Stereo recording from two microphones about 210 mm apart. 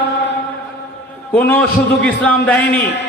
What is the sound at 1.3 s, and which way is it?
A man's voice, 5° left (ahead or behind).